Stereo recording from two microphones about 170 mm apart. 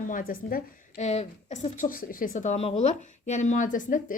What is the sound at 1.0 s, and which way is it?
A woman's voice, 40° left (ahead or behind).